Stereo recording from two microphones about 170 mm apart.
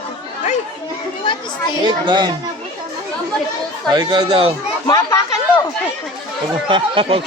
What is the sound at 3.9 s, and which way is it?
Speech, 25° right (ahead or behind).